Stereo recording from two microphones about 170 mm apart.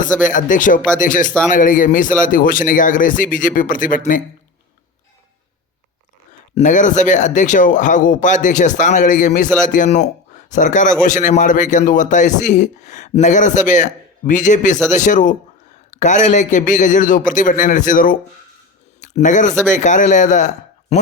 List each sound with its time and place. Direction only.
0.3 s a man's voice: 50° left (ahead or behind)
6.6 s a man's voice: 45° left (ahead or behind)